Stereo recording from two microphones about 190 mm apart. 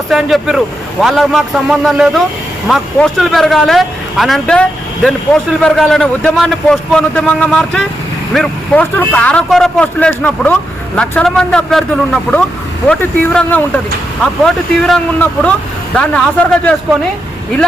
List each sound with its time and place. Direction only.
0.1 s a man's voice: centre (ahead or behind)
5.6 s a man's voice: centre (ahead or behind)